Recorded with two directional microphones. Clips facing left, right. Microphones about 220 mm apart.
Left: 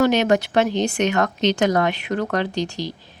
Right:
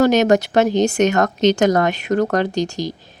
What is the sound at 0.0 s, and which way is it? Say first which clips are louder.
Speech: right 3 dB; 40° right (ahead or behind).